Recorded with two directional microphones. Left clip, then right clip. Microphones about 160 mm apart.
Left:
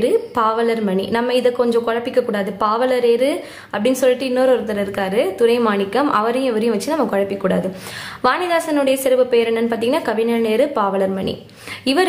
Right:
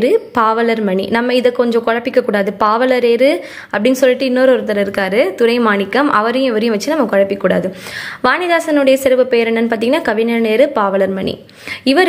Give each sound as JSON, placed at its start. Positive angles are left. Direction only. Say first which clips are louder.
{"t": 0.0, "sound": "a woman's voice", "louder": "right 4 dB", "side_deg": -25}